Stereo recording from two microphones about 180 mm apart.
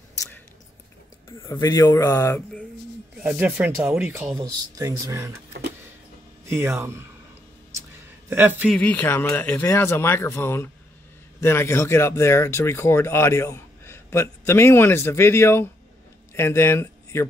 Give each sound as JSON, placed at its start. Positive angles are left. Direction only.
{"t": 1.3, "sound": "speech", "side_deg": 15}
{"t": 3.2, "sound": "speech", "side_deg": -10}
{"t": 6.5, "sound": "speech", "side_deg": -15}
{"t": 8.3, "sound": "speech", "side_deg": -10}
{"t": 8.6, "sound": "speech", "side_deg": 5}